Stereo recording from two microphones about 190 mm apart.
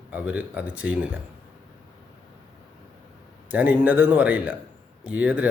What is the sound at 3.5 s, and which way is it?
A man's voice, 10° right (ahead or behind).